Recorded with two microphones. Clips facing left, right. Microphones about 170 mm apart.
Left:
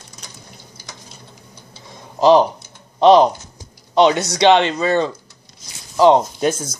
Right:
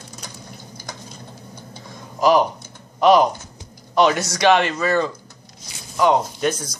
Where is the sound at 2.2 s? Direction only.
25° left (ahead or behind).